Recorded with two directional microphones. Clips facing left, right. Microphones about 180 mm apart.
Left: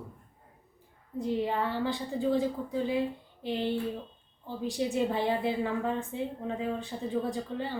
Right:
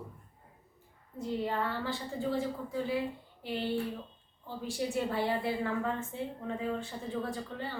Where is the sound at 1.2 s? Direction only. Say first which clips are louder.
Left 4 dB; 15° left (ahead or behind).